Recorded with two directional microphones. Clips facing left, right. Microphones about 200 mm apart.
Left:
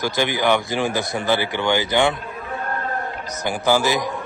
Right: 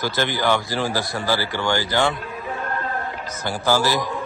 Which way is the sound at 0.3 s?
15° left (ahead or behind).